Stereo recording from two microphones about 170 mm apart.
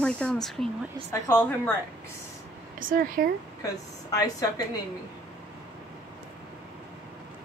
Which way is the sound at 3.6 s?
20° left (ahead or behind).